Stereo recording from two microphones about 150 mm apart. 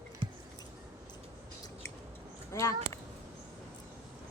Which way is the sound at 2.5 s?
20° left (ahead or behind).